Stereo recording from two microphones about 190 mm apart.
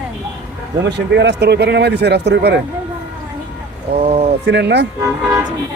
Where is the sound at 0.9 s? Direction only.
65° right (ahead or behind).